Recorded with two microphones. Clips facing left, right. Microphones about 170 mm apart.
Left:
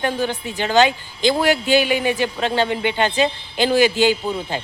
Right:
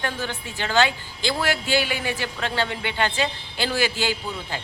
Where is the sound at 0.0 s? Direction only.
15° left (ahead or behind).